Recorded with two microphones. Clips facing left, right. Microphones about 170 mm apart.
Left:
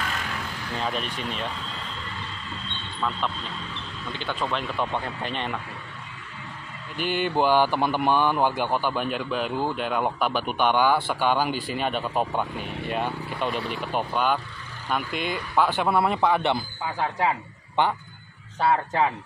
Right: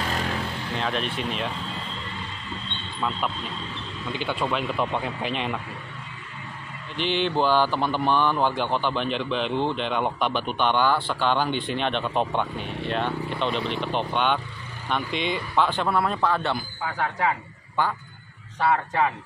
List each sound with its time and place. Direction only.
0.0 s vehicle: 30° right (ahead or behind)
0.7 s speech: 5° left (ahead or behind)
4.2 s speech: 10° right (ahead or behind)
7.0 s speech: 5° left (ahead or behind)
17.8 s a man's voice: 20° left (ahead or behind)